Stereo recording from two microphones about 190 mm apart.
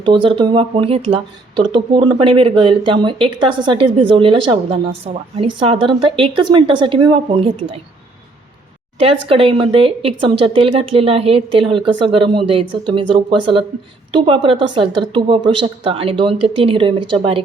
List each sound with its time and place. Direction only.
0.0 s speech: 25° right (ahead or behind)
9.0 s speech: 30° right (ahead or behind)